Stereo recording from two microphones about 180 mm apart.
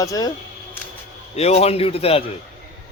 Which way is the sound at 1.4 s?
35° left (ahead or behind).